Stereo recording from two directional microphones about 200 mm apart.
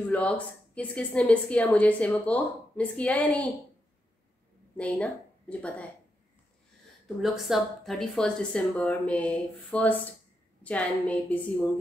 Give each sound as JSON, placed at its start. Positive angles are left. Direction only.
{"t": 0.0, "sound": "a woman's voice", "side_deg": 5}
{"t": 4.7, "sound": "a woman's voice", "side_deg": 5}
{"t": 7.2, "sound": "a woman's voice", "side_deg": 0}